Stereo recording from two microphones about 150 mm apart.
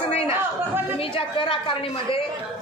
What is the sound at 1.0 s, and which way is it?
A woman's voice, 35° left (ahead or behind).